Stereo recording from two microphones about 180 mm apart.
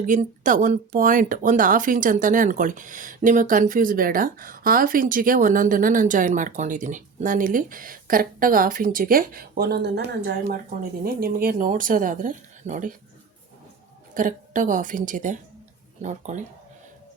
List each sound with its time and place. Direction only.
0.1 s speech: 45° right (ahead or behind); by 10.6 s 65° right (ahead or behind)
11.0 s speech: 55° right (ahead or behind)
14.1 s speech: 45° right (ahead or behind)